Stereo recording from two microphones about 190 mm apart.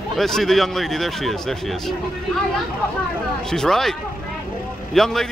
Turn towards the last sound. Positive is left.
turn(degrees=0)  # may be behind; listen again after turning